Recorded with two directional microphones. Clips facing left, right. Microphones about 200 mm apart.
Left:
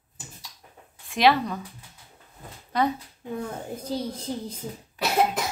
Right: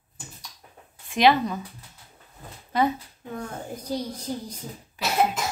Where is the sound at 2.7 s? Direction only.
5° right (ahead or behind).